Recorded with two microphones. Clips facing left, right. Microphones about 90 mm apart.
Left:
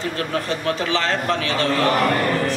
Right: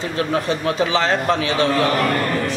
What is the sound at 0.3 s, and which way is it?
A man's voice, 15° right (ahead or behind).